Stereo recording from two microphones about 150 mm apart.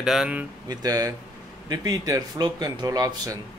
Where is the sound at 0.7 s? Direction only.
25° right (ahead or behind).